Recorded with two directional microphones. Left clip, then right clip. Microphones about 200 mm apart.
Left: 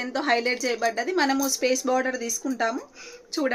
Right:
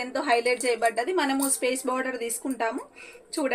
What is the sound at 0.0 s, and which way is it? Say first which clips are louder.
A woman's voice: even; 30° left (ahead or behind).